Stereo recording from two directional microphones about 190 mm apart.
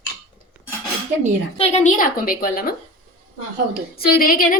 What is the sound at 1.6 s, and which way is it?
A woman's voice, 40° left (ahead or behind).